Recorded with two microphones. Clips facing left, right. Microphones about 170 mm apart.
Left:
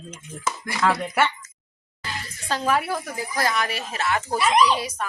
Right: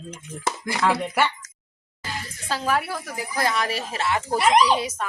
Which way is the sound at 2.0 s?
5° right (ahead or behind).